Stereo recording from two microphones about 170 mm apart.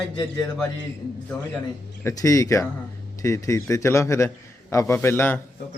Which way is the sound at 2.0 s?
20° left (ahead or behind).